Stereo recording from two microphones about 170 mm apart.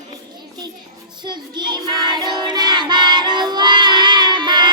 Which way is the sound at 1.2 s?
25° right (ahead or behind).